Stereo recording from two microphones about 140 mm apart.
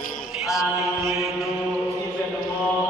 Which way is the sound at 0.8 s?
20° right (ahead or behind).